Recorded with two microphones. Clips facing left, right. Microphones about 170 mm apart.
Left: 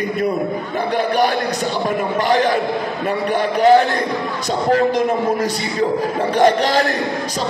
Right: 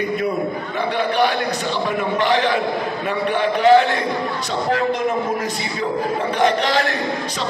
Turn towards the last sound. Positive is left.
turn(degrees=40)  # may be behind; listen again after turning